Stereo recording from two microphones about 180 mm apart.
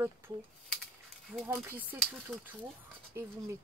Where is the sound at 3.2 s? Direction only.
15° right (ahead or behind).